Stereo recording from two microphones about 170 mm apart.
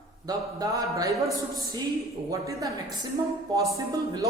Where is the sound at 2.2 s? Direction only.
20° right (ahead or behind).